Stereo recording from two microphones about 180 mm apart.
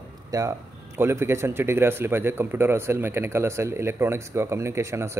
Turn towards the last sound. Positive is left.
turn(degrees=-15)  # may be behind; listen again after turning